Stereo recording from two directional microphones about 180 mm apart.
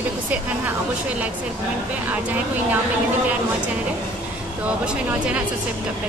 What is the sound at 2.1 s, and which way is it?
Speech, 10° right (ahead or behind).